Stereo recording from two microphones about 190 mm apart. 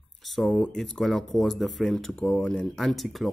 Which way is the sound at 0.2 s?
Centre (ahead or behind).